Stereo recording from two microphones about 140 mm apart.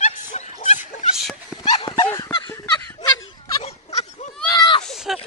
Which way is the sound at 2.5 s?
20° left (ahead or behind).